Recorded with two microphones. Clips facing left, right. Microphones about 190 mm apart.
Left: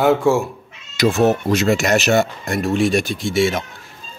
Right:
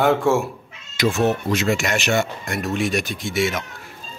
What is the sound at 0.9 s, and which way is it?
Speech, 40° left (ahead or behind).